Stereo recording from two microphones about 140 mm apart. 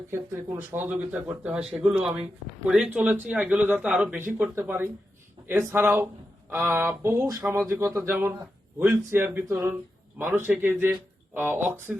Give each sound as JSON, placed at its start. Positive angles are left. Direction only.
{"t": 0.1, "sound": "speech", "side_deg": -15}
{"t": 6.7, "sound": "speech", "side_deg": -20}